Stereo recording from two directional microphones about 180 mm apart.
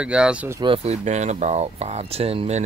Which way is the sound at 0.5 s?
30° right (ahead or behind).